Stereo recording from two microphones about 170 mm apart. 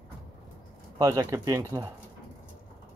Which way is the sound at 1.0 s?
20° right (ahead or behind).